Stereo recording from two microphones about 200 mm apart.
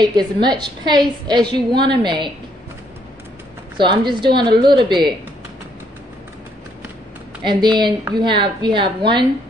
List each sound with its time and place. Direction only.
0.0 s a woman's voice: 20° right (ahead or behind)
3.7 s a woman's voice: 25° right (ahead or behind)
7.4 s a woman's voice: 20° right (ahead or behind)